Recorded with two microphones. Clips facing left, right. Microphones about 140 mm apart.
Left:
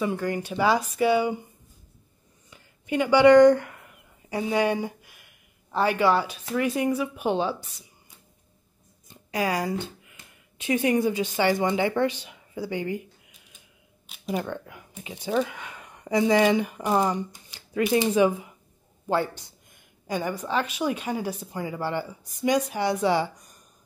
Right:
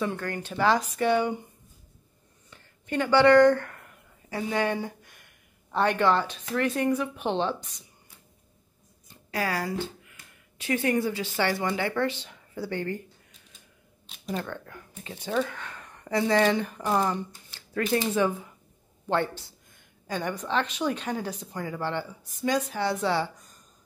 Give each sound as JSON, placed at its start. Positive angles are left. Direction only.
{"t": 0.0, "sound": "speech", "side_deg": 10}
{"t": 2.5, "sound": "speech", "side_deg": 10}
{"t": 9.3, "sound": "speech", "side_deg": 15}